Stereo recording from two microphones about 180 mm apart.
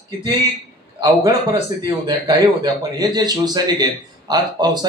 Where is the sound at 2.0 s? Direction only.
20° right (ahead or behind).